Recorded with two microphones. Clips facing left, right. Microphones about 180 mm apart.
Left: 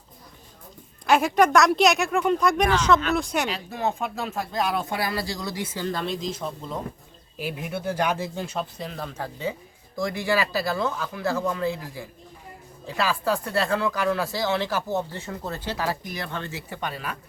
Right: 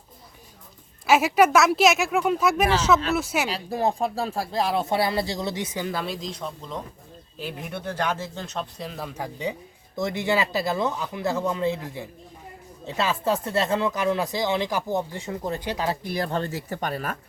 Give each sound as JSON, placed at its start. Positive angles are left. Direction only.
{"t": 1.0, "sound": "speech", "side_deg": -5}
{"t": 3.5, "sound": "speech", "side_deg": -35}
{"t": 16.0, "sound": "speech", "side_deg": -35}